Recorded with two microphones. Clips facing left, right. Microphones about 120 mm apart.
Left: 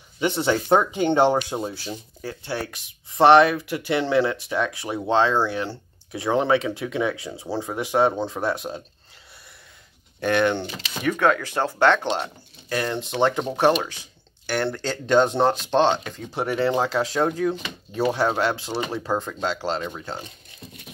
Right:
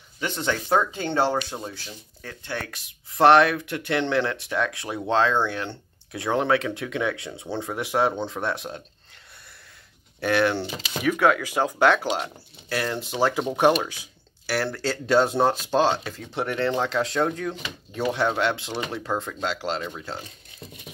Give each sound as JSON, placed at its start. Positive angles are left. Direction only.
{"t": 0.2, "sound": "speech", "side_deg": 15}
{"t": 10.2, "sound": "speech", "side_deg": -5}